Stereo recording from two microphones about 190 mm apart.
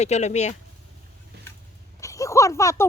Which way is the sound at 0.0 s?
35° left (ahead or behind).